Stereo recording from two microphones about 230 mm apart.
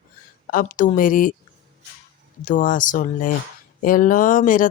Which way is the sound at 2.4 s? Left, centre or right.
Left.